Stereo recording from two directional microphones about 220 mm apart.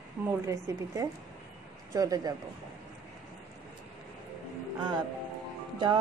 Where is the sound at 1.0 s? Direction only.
15° right (ahead or behind).